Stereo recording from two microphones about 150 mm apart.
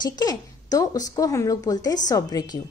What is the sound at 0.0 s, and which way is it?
A woman's voice, 25° left (ahead or behind).